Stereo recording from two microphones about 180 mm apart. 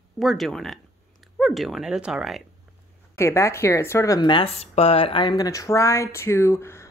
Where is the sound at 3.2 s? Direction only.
15° left (ahead or behind).